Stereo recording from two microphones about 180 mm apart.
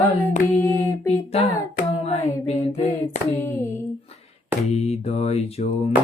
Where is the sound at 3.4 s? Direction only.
15° left (ahead or behind).